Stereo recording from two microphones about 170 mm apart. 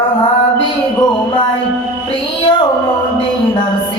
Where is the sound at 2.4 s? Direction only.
30° left (ahead or behind).